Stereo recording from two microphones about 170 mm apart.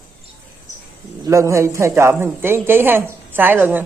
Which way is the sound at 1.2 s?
15° right (ahead or behind).